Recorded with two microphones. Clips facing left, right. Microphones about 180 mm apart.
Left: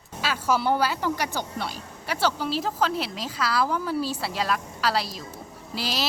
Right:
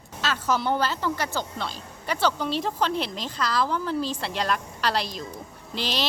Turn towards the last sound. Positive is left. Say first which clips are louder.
# right 1 dB
turn(degrees=5)  # may be behind; listen again after turning